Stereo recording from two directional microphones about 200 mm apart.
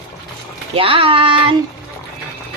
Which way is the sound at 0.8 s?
25° right (ahead or behind).